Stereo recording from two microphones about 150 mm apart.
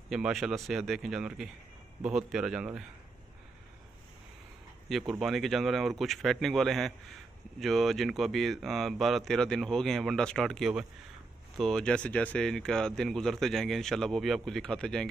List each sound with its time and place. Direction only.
0.1 s speech: centre (ahead or behind)
4.8 s speech: centre (ahead or behind)